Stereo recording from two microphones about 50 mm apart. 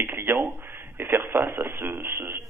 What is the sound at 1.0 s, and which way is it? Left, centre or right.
Speech, right.